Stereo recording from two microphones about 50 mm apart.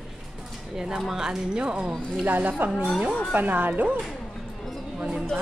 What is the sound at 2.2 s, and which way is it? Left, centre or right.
Speech, right.